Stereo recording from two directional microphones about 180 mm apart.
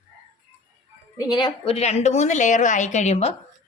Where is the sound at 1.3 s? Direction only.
25° left (ahead or behind).